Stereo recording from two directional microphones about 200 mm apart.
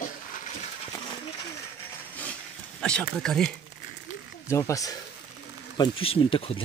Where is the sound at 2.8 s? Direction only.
5° left (ahead or behind).